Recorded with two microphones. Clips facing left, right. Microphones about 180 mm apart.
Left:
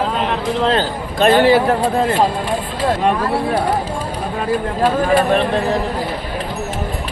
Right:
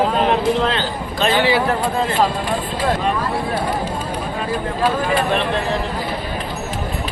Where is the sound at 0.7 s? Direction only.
50° left (ahead or behind).